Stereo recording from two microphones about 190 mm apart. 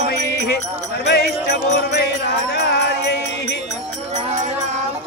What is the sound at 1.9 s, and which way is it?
Music, 60° left (ahead or behind).